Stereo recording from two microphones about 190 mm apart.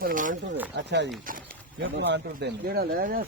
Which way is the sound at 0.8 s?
65° right (ahead or behind).